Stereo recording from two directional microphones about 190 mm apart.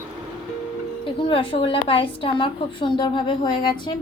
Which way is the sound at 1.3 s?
30° left (ahead or behind).